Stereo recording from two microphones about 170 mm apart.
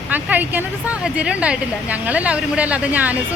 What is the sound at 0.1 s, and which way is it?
Speech, 10° right (ahead or behind).